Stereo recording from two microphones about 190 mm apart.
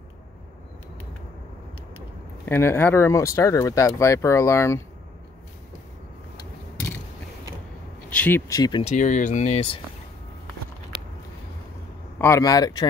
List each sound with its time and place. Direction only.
2.4 s speech: 10° left (ahead or behind)
8.1 s speech: 10° left (ahead or behind)
8.8 s speech: 40° left (ahead or behind)
12.2 s speech: 15° left (ahead or behind)